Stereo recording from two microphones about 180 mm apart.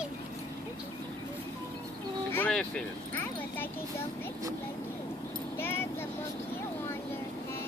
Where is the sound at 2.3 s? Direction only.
5° left (ahead or behind).